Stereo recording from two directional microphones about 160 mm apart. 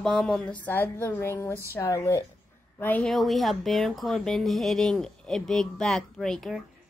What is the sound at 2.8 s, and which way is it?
A woman's voice, 5° left (ahead or behind).